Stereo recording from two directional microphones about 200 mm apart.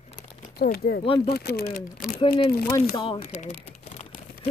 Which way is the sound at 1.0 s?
25° left (ahead or behind).